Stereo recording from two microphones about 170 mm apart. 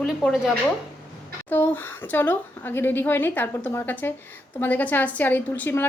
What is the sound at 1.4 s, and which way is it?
A woman's voice, 10° left (ahead or behind).